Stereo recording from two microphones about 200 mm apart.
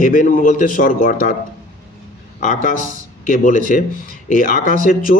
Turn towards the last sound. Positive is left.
turn(degrees=45)  # may be behind; listen again after turning